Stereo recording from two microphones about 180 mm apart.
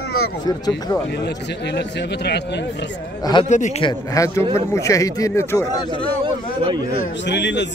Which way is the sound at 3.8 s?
20° left (ahead or behind).